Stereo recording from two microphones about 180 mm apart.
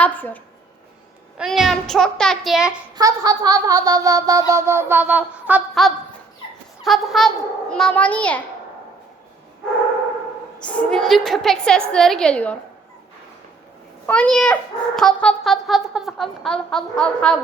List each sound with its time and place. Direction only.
0.0 s a woman's voice: 10° left (ahead or behind)
1.4 s a child's voice: centre (ahead or behind)
2.9 s a sound: 20° right (ahead or behind); by 5.9 s 5° right (ahead or behind)
6.8 s a child's voice: centre (ahead or behind)
10.6 s a child's voice: 5° left (ahead or behind)
14.1 s a child's voice: 5° left (ahead or behind)